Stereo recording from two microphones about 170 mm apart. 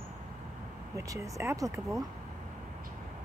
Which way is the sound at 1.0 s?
20° right (ahead or behind).